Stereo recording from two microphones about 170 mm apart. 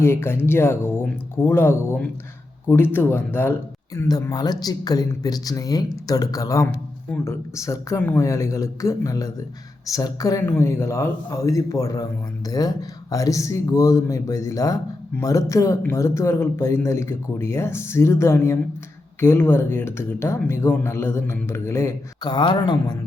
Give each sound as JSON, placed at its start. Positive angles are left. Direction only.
{"t": 0.0, "sound": "speech", "side_deg": 15}